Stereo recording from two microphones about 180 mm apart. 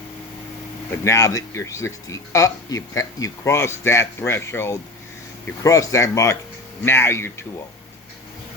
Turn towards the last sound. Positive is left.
turn(degrees=15)  # may be behind; listen again after turning